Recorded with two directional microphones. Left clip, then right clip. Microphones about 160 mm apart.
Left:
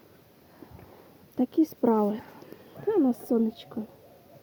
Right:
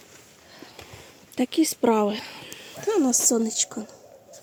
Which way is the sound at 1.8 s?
15° right (ahead or behind).